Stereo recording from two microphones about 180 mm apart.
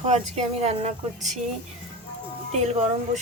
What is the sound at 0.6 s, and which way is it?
Speech, 35° right (ahead or behind).